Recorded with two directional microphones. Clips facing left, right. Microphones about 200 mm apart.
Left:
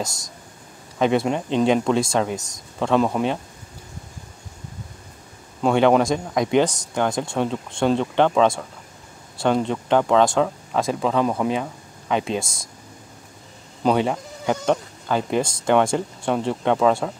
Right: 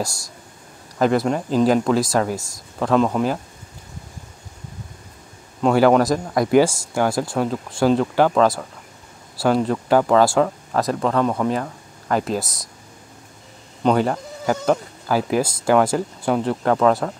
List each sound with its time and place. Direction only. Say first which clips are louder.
0.0 s speech: right 2 dB; 20° left (ahead or behind)
0.9 s speech: right 1 dB; centre (ahead or behind)
5.6 s speech: right 2 dB; centre (ahead or behind)
13.8 s speech: right 1 dB; centre (ahead or behind)